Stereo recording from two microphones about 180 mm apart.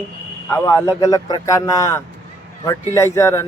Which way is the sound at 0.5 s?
15° left (ahead or behind).